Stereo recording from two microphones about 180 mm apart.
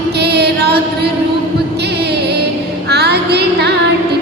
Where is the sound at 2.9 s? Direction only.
65° right (ahead or behind).